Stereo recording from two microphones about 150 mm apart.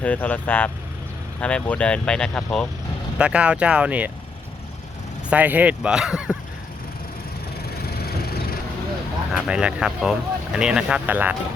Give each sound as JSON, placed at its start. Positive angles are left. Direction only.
{"t": 0.0, "sound": "speech", "side_deg": 10}
{"t": 3.2, "sound": "speech", "side_deg": -5}
{"t": 5.3, "sound": "speech", "side_deg": -10}
{"t": 7.8, "sound": "vehicle", "side_deg": 90}
{"t": 9.5, "sound": "speech", "side_deg": -5}